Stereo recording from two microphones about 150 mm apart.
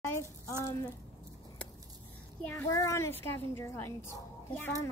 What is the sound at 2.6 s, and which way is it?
A child's voice, 20° left (ahead or behind).